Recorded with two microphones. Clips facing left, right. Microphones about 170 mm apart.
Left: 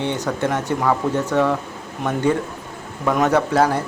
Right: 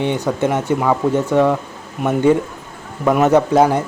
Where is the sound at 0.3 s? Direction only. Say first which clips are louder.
Right 4 dB; 15° right (ahead or behind).